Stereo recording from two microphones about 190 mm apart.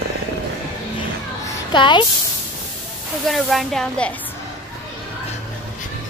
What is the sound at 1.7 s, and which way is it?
Speech, 25° left (ahead or behind).